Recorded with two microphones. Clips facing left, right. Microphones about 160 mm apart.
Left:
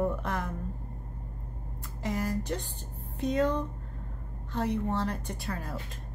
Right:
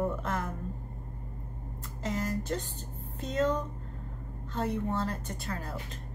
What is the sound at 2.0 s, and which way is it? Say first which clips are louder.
A woman's voice: left 1 dB; 15° left (ahead or behind).